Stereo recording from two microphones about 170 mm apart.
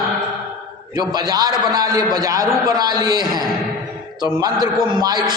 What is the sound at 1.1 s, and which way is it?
A man's voice, 25° right (ahead or behind).